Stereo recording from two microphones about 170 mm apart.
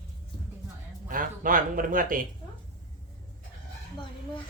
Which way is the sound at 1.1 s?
55° right (ahead or behind).